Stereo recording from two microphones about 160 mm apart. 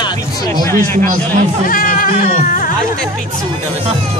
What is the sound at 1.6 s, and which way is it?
Speech, 60° left (ahead or behind).